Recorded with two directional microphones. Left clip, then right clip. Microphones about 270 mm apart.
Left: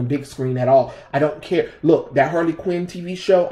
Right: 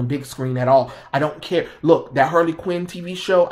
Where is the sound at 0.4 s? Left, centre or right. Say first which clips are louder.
Left 1 dB; right.